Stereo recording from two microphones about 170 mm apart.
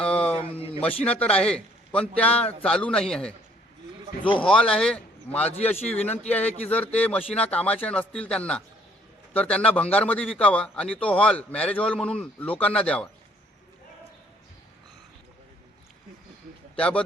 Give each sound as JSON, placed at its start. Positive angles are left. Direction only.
{"t": 0.0, "sound": "a sound", "side_deg": 5}
{"t": 0.3, "sound": "a sound", "side_deg": 35}
{"t": 1.0, "sound": "a man's voice", "side_deg": 10}
{"t": 4.2, "sound": "speech", "side_deg": 30}
{"t": 4.4, "sound": "a man's voice", "side_deg": 5}
{"t": 5.7, "sound": "a man's voice", "side_deg": 40}
{"t": 6.7, "sound": "a man's voice", "side_deg": 10}
{"t": 16.7, "sound": "a man's voice", "side_deg": 5}